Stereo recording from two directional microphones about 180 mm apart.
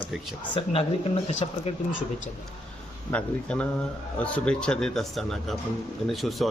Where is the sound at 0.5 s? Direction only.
30° left (ahead or behind).